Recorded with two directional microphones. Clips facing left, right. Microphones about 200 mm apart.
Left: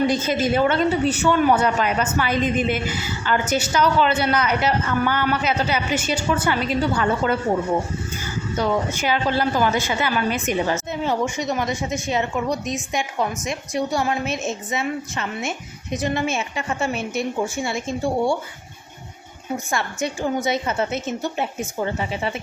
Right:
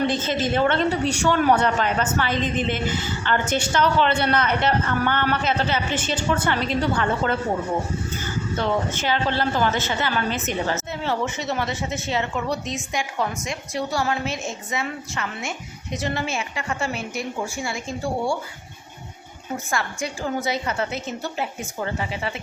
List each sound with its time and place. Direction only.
0.1 s speech: 10° left (ahead or behind)
8.5 s a woman's voice: 10° left (ahead or behind)
19.7 s a woman's voice: 20° left (ahead or behind)